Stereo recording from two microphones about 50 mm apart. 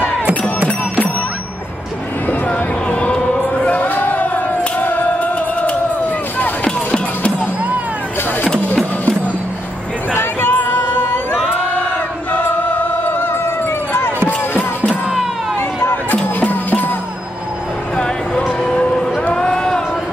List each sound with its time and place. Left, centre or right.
2.9 s music: left
3.5 s chant: left
3.8 s a sound: left
4.7 s music: left
10.1 s a sound: left
12.3 s music: left
15.8 s music: left
17.9 s music: centre
19.3 s a sound: centre